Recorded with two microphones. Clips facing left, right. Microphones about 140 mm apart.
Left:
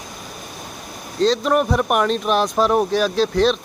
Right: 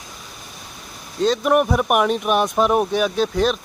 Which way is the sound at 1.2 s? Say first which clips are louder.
Even; 10° right (ahead or behind).